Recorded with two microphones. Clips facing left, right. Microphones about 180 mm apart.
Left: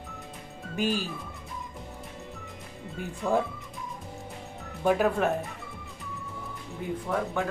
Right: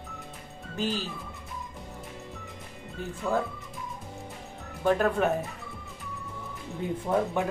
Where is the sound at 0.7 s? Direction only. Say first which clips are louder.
Left 2 dB; 15° left (ahead or behind).